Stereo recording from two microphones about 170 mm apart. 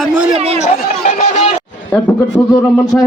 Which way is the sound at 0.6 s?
45° left (ahead or behind).